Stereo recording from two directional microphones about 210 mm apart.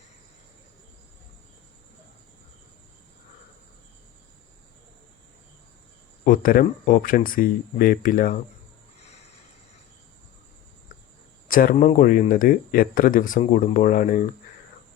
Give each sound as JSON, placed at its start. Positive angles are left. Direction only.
{"t": 6.2, "sound": "speech", "side_deg": 40}
{"t": 11.4, "sound": "speech", "side_deg": 40}